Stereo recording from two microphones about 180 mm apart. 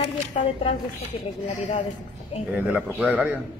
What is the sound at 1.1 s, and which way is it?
Speech, 30° left (ahead or behind).